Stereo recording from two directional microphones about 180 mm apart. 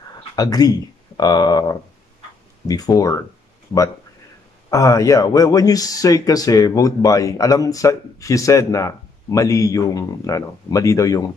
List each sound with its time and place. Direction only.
0.4 s speech: 20° left (ahead or behind)
4.6 s speech: 20° left (ahead or behind)